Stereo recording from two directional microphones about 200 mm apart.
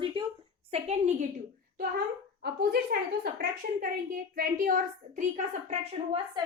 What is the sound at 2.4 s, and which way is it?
A woman's voice, 50° right (ahead or behind).